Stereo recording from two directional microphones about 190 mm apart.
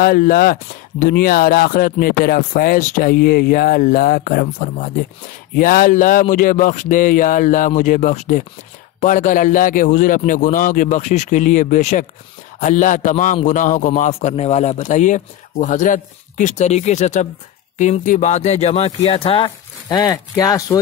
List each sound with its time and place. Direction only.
0.0 s a man's voice: 50° left (ahead or behind); by 20.8 s 20° left (ahead or behind)